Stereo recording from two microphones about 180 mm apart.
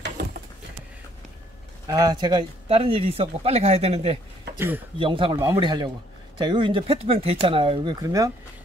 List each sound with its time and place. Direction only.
0.0 s a sound: 60° right (ahead or behind)
1.9 s speech: 20° right (ahead or behind); by 4.2 s 35° right (ahead or behind)
4.6 s speech: 10° right (ahead or behind)
4.9 s speech: 30° right (ahead or behind)